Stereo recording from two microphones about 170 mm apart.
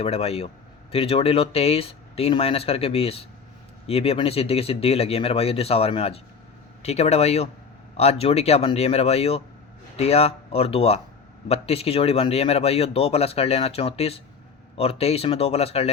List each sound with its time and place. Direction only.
0.0 s speech: 35° left (ahead or behind)